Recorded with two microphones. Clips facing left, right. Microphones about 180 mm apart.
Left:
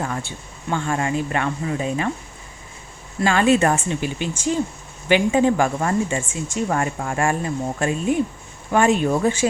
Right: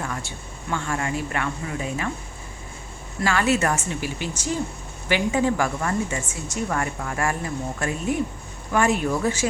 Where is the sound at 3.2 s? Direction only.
25° left (ahead or behind).